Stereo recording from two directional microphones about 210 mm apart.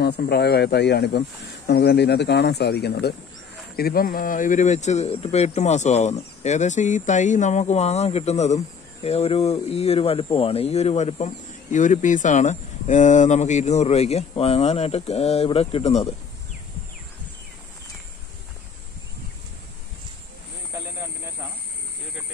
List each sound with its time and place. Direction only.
0.0 s speech: 50° left (ahead or behind); by 16.1 s 30° left (ahead or behind)
20.7 s vehicle: 10° right (ahead or behind)